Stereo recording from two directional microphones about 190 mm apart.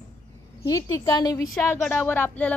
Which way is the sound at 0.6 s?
20° left (ahead or behind).